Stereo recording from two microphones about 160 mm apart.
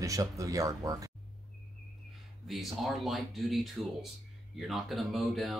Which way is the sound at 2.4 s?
Centre (ahead or behind).